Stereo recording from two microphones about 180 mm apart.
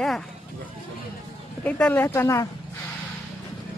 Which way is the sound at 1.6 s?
5° left (ahead or behind).